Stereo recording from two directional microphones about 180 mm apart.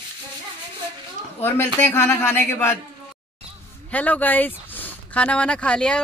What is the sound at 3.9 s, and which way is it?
Speech, 10° left (ahead or behind).